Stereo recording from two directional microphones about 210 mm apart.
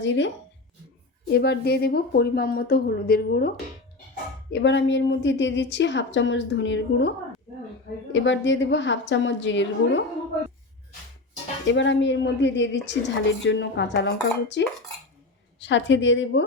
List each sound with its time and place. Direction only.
1.3 s a woman's voice: 50° left (ahead or behind)
8.1 s speech: 60° left (ahead or behind)
11.6 s speech: 60° left (ahead or behind)
15.6 s speech: 60° left (ahead or behind)